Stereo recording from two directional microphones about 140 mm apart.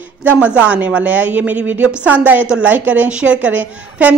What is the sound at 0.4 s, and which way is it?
A woman's voice, 10° right (ahead or behind).